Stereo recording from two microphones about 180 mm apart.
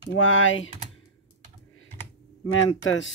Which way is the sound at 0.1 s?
90° left.